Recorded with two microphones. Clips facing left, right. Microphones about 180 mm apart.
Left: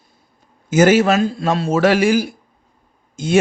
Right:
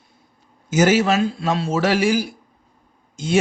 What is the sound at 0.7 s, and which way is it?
A man's voice, 55° left (ahead or behind).